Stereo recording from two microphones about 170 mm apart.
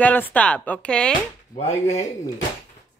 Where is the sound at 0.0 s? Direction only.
10° left (ahead or behind).